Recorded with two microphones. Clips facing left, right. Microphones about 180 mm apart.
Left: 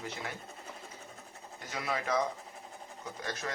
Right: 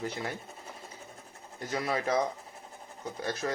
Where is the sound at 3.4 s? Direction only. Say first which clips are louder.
Right 7 dB; 40° right (ahead or behind).